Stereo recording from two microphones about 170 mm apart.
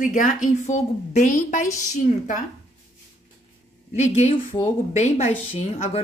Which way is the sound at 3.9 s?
40° left (ahead or behind).